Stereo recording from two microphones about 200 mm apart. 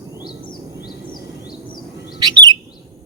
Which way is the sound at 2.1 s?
20° right (ahead or behind).